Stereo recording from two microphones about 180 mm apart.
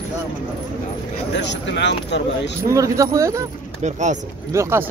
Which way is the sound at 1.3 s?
75° left (ahead or behind).